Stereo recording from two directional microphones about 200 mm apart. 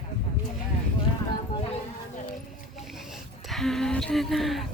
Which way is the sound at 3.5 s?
Centre (ahead or behind).